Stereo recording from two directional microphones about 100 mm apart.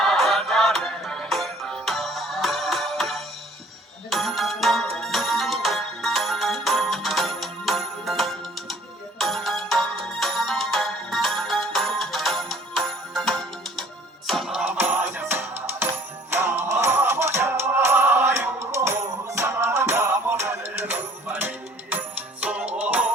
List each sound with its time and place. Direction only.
0.0 s music: centre (ahead or behind)
14.6 s music: 20° right (ahead or behind)